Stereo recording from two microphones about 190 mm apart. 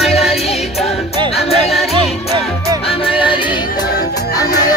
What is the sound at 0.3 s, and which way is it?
Music, 35° left (ahead or behind).